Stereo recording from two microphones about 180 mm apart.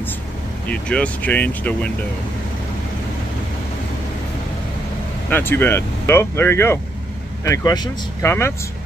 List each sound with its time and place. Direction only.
0.7 s speech: 5° left (ahead or behind)
5.3 s speech: 10° left (ahead or behind)